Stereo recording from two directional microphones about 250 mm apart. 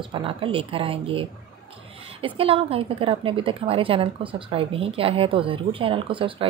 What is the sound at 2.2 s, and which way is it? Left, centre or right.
A woman's voice, right.